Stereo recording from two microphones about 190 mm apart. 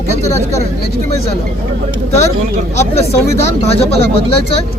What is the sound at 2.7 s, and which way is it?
Speech, 35° left (ahead or behind).